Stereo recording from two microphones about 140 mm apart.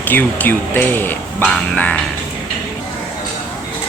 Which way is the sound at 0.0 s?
15° left (ahead or behind).